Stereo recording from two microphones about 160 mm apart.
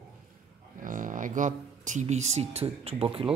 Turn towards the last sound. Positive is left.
turn(degrees=-30)  # may be behind; listen again after turning